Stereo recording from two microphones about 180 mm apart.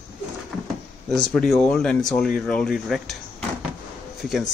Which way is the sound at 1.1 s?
Centre (ahead or behind).